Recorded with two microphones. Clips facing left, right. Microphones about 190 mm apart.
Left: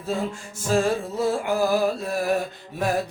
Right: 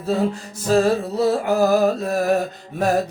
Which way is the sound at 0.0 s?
40° right (ahead or behind).